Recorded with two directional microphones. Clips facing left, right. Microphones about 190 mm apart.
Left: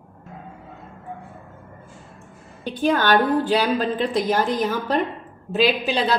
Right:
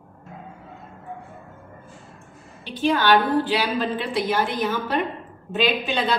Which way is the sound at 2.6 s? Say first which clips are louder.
Left 1 dB; 50° left (ahead or behind).